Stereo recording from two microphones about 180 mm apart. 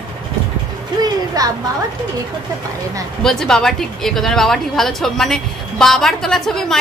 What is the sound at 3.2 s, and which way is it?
A woman's voice, 5° left (ahead or behind).